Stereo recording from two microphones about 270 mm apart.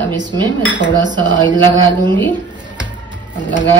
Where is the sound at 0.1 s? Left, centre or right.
Centre.